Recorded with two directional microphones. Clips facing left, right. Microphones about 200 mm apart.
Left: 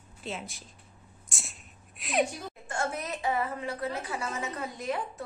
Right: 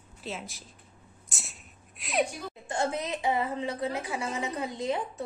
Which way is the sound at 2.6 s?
20° right (ahead or behind).